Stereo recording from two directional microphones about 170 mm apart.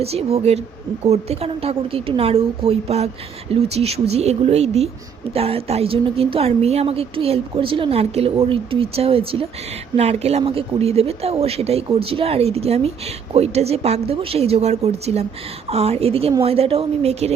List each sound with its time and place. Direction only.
0.0 s speech: 35° right (ahead or behind)